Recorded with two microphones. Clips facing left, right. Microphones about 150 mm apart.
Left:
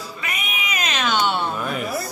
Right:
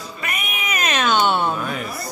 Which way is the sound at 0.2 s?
50° right (ahead or behind).